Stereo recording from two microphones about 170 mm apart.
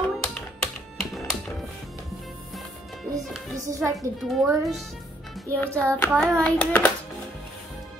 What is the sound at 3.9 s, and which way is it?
Speech, centre (ahead or behind).